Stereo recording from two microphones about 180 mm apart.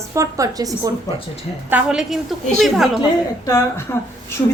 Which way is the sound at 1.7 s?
5° right (ahead or behind).